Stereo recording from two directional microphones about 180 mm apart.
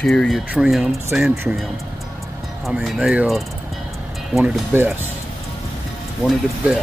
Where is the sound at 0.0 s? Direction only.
5° left (ahead or behind).